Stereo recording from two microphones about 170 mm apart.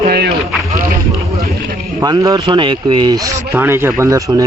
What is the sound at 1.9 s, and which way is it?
Speech, 20° right (ahead or behind).